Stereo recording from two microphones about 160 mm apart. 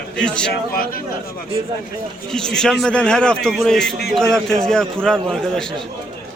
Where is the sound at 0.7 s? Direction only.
65° left (ahead or behind).